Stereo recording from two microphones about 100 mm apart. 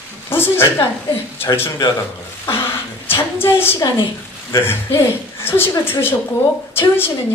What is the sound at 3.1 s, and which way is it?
A woman's voice, 25° left (ahead or behind).